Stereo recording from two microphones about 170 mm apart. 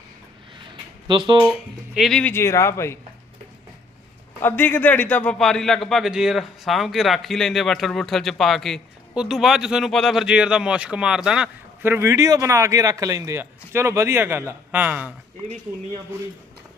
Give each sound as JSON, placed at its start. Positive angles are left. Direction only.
{"t": 1.0, "sound": "speech", "side_deg": -25}
{"t": 2.0, "sound": "a man's voice", "side_deg": 0}
{"t": 2.3, "sound": "speech", "side_deg": 15}
{"t": 4.4, "sound": "a man's voice", "side_deg": 10}